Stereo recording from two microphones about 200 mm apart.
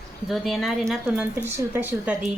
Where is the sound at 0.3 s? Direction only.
Centre (ahead or behind).